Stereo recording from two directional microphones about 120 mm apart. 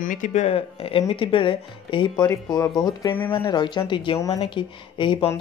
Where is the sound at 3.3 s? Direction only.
45° left (ahead or behind).